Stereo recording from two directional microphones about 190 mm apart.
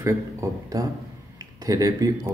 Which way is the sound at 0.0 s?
15° right (ahead or behind).